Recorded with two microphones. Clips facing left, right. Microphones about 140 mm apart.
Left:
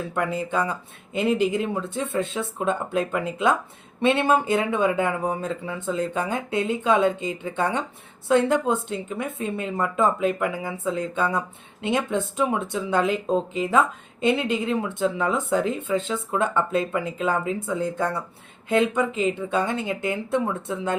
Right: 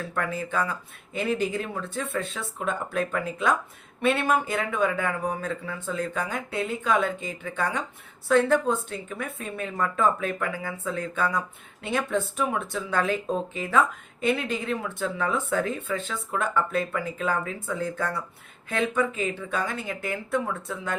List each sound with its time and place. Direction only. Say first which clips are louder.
0.1 s speech: left 4 dB; 20° left (ahead or behind)